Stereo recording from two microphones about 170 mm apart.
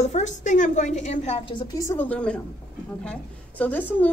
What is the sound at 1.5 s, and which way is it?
A woman's voice, 25° left (ahead or behind).